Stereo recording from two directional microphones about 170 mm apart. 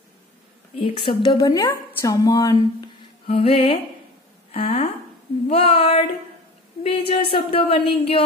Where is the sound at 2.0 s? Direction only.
20° left (ahead or behind).